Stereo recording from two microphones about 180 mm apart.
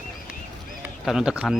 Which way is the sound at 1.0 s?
5° right (ahead or behind).